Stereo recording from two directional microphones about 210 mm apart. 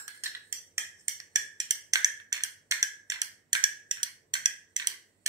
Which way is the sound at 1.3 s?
20° right (ahead or behind).